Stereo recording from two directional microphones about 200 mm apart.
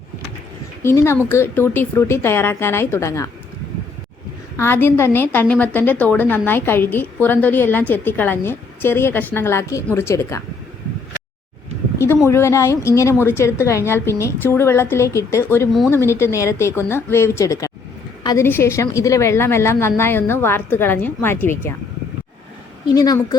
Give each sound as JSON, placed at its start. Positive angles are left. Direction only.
{"t": 0.8, "sound": "a woman's voice", "side_deg": 15}
{"t": 4.5, "sound": "a woman's voice", "side_deg": 10}
{"t": 11.9, "sound": "a woman's voice", "side_deg": 15}
{"t": 23.0, "sound": "speech", "side_deg": 20}